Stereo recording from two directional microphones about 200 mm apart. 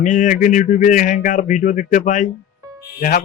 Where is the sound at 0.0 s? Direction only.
40° left (ahead or behind).